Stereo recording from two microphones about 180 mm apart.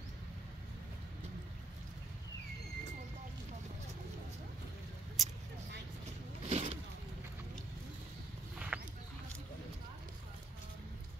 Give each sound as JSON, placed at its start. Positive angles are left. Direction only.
{"t": 5.2, "sound": "vehicle", "side_deg": 0}
{"t": 6.4, "sound": "vehicle", "side_deg": -35}
{"t": 8.5, "sound": "a sound", "side_deg": -5}